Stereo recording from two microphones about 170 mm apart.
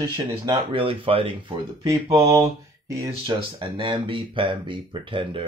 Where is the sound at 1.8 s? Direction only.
20° right (ahead or behind).